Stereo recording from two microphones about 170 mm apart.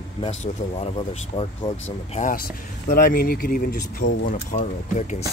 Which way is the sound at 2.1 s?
50° left (ahead or behind).